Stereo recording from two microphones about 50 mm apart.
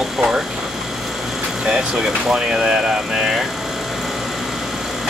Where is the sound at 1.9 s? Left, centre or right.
Centre.